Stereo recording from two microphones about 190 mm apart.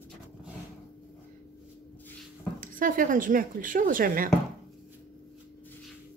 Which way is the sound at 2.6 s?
45° right (ahead or behind).